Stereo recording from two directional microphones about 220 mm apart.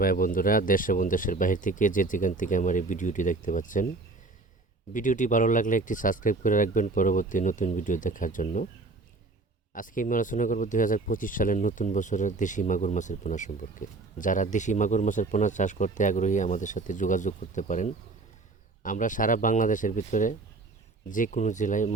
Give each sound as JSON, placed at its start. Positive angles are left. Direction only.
{"t": 0.0, "sound": "speech", "side_deg": 40}
{"t": 4.9, "sound": "speech", "side_deg": 35}
{"t": 9.7, "sound": "speech", "side_deg": 35}